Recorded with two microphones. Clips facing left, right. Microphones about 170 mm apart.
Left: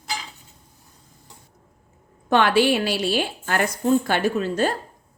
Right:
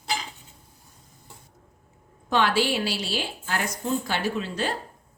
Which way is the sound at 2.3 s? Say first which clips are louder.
Left 5 dB; 60° left (ahead or behind).